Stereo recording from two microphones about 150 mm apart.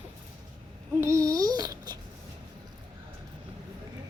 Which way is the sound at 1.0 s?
20° right (ahead or behind).